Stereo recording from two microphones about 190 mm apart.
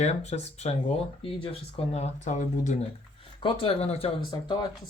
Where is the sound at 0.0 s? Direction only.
35° left (ahead or behind).